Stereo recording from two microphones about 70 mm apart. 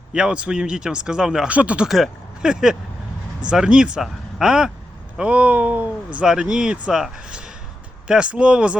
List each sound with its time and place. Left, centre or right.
0.1 s speech: centre
1.9 s speech: centre
8.0 s speech: centre